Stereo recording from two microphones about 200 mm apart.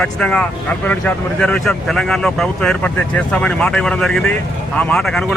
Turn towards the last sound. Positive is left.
turn(degrees=0)  # may be behind; listen again after turning